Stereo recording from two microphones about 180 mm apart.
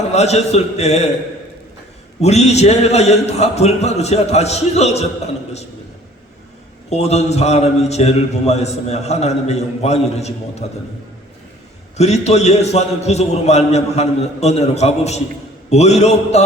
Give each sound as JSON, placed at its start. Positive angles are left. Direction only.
{"t": 0.1, "sound": "a man's voice", "side_deg": 35}
{"t": 2.2, "sound": "a man's voice", "side_deg": 35}
{"t": 6.9, "sound": "a man's voice", "side_deg": 40}
{"t": 11.9, "sound": "a man's voice", "side_deg": 35}